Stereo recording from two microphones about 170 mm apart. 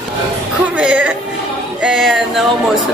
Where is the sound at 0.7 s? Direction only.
10° right (ahead or behind).